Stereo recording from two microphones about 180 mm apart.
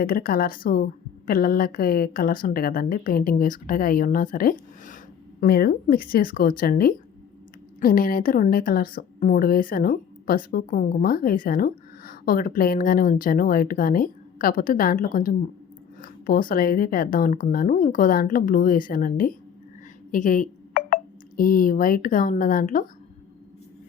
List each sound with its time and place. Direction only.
0.0 s a woman's voice: 55° left (ahead or behind)